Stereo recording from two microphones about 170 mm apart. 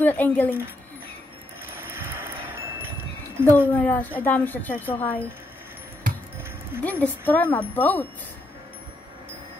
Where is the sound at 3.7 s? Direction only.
10° left (ahead or behind).